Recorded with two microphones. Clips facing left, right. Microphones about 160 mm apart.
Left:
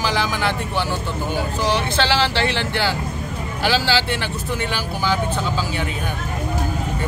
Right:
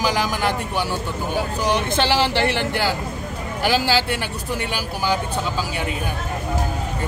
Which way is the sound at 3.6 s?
10° right (ahead or behind).